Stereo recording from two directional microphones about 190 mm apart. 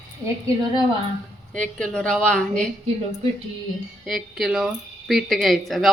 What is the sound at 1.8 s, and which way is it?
Speech, 5° left (ahead or behind).